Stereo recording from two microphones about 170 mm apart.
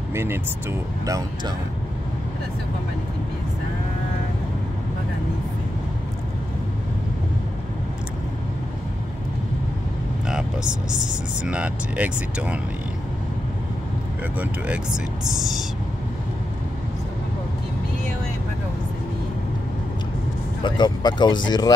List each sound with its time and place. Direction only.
0.1 s speech: 15° right (ahead or behind)
10.2 s vehicle: 5° right (ahead or behind)
11.4 s speech: 10° right (ahead or behind)
15.3 s a sound: centre (ahead or behind)
20.6 s speech: 25° left (ahead or behind)